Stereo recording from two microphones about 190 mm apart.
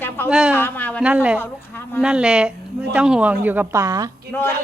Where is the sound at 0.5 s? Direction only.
10° left (ahead or behind).